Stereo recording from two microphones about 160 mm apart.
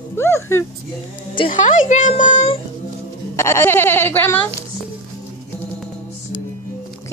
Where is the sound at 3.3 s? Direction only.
15° left (ahead or behind).